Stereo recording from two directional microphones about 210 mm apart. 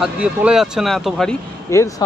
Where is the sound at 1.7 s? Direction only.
15° left (ahead or behind).